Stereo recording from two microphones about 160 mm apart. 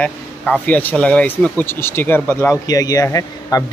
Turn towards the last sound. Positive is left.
turn(degrees=20)  # may be behind; listen again after turning